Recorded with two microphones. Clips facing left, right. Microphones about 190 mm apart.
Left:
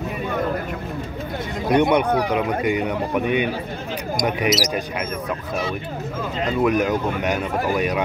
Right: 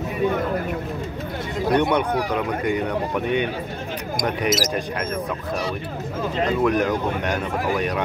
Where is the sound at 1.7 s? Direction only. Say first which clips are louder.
Left 3 dB; 15° left (ahead or behind).